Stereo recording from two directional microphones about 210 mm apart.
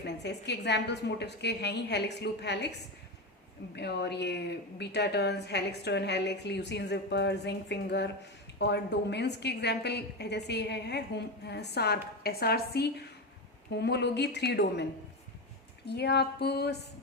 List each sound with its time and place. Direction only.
0.0 s a woman's voice: 55° left (ahead or behind)
3.8 s a woman's voice: 55° left (ahead or behind)
15.9 s a woman's voice: 50° left (ahead or behind)